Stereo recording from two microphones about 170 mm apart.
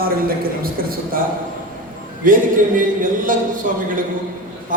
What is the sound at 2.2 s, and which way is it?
A man's voice, 55° right (ahead or behind).